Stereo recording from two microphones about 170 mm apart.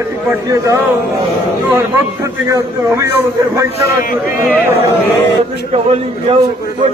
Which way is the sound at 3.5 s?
15° right (ahead or behind).